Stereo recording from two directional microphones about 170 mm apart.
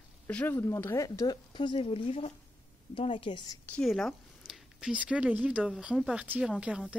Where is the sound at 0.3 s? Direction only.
10° left (ahead or behind); by 3.5 s 25° left (ahead or behind).